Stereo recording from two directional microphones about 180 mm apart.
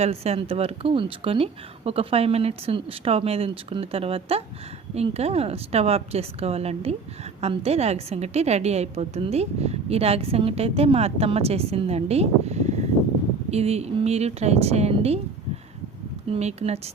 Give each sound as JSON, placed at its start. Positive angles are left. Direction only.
{"t": 0.0, "sound": "a woman's voice", "side_deg": -35}
{"t": 16.3, "sound": "a woman's voice", "side_deg": -35}